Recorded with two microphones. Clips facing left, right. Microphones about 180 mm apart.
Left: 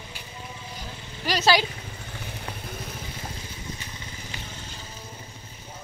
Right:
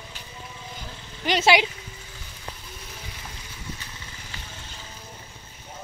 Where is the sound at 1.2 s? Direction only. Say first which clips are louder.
Right 2 dB; 20° right (ahead or behind).